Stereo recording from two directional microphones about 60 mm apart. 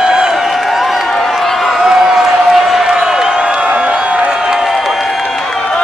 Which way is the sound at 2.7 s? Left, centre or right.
Centre.